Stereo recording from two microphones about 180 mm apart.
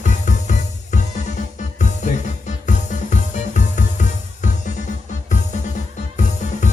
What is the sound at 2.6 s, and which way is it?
Music, 45° left (ahead or behind).